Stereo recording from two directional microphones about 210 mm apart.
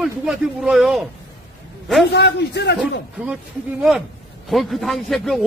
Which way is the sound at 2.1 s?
55° left (ahead or behind).